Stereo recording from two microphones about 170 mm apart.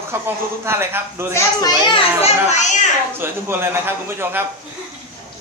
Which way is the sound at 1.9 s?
40° left (ahead or behind).